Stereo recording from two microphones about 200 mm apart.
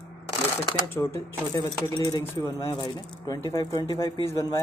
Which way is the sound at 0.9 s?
10° left (ahead or behind).